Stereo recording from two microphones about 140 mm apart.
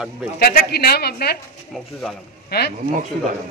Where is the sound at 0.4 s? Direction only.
90° left.